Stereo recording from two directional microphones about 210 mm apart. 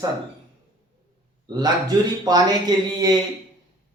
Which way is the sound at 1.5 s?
20° right (ahead or behind).